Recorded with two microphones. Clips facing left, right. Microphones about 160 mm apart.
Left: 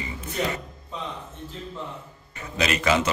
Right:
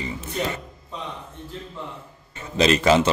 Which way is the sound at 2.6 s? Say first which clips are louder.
Right 6 dB; 30° right (ahead or behind).